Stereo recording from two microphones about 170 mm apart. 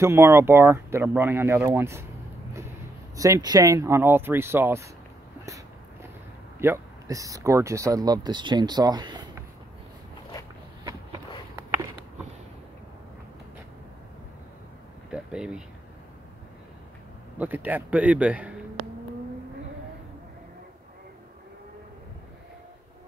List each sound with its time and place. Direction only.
0.0 s speech: 15° right (ahead or behind)
3.2 s speech: 20° right (ahead or behind)
6.6 s speech: 15° right (ahead or behind)
10.8 s a sound: 25° right (ahead or behind)
15.0 s a sound: 5° right (ahead or behind)
17.4 s speech: 10° right (ahead or behind)